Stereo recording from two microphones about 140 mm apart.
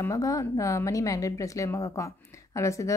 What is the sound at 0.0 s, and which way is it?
A woman's voice, 20° left (ahead or behind).